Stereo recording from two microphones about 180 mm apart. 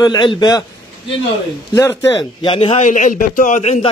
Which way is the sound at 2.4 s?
30° left (ahead or behind).